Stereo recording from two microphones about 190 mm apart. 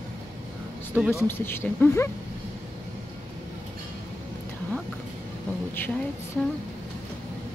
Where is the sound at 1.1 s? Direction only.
10° left (ahead or behind).